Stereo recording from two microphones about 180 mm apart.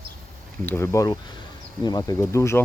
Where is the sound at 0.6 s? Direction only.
15° left (ahead or behind).